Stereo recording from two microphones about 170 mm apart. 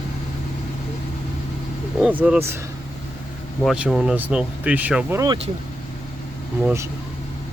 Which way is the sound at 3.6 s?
5° right (ahead or behind).